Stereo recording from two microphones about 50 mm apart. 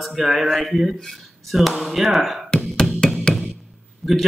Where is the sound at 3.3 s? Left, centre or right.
Centre.